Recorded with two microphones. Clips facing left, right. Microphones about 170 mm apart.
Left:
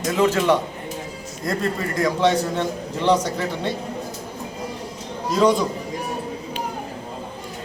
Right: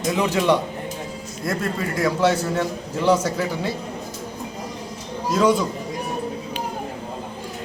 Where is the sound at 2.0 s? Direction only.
5° right (ahead or behind).